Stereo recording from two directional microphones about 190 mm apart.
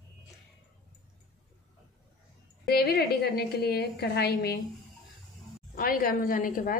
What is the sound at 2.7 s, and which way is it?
A woman's voice, 55° left (ahead or behind).